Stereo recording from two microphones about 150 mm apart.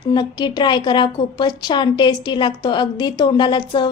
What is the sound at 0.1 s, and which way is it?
A woman's voice, 30° left (ahead or behind).